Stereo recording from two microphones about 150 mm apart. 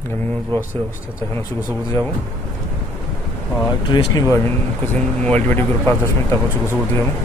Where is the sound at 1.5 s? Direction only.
10° right (ahead or behind).